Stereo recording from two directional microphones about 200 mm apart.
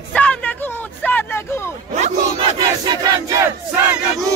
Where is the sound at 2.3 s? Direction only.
25° right (ahead or behind).